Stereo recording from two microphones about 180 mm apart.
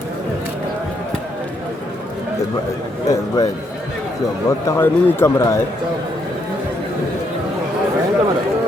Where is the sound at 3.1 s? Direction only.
20° left (ahead or behind).